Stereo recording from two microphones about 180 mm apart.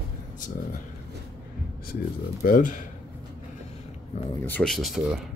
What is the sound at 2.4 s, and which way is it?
Speech, 50° left (ahead or behind).